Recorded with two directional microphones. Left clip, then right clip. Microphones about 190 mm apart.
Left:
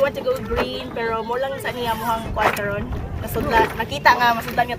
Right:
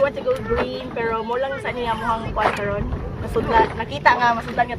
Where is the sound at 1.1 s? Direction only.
25° left (ahead or behind).